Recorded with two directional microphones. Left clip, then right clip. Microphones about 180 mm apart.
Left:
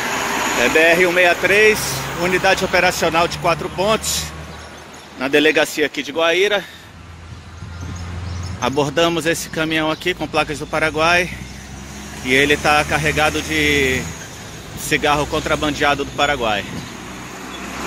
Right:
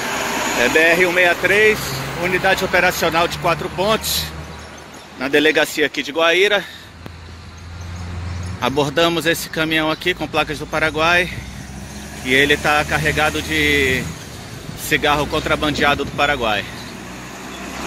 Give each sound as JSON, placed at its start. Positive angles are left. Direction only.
{"t": 0.1, "sound": "vehicle", "side_deg": -30}
{"t": 0.7, "sound": "speech", "side_deg": 20}
{"t": 8.5, "sound": "speech", "side_deg": 5}